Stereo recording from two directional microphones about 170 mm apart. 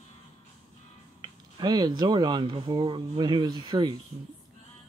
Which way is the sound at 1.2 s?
25° right (ahead or behind).